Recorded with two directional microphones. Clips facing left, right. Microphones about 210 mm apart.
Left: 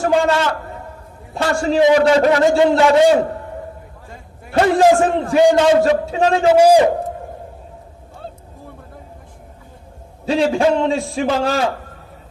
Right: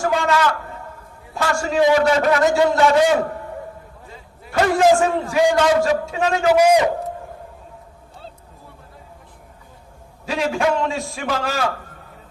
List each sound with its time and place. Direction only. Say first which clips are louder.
0.0 s a man's voice: left 3 dB; 30° left (ahead or behind)
4.5 s a man's voice: left 3 dB; 35° left (ahead or behind)
10.2 s a man's voice: left 5 dB; 30° left (ahead or behind)